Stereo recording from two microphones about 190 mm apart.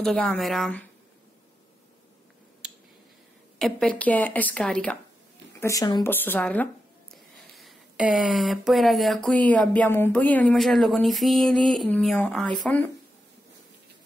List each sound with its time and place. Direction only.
0.0 s speech: 5° left (ahead or behind)
2.6 s a sound: 5° right (ahead or behind)
3.5 s speech: 5° left (ahead or behind)
5.6 s speech: 15° left (ahead or behind)
7.5 s speech: centre (ahead or behind)